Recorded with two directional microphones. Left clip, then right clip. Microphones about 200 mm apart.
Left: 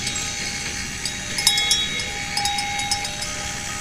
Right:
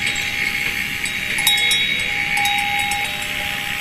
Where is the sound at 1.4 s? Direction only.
20° right (ahead or behind).